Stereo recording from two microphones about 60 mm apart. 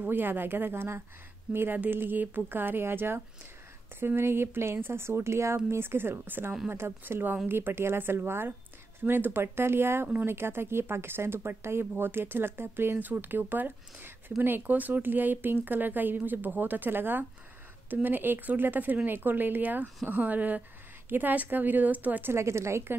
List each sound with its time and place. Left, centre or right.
0.1 s speech: right
22.3 s speech: right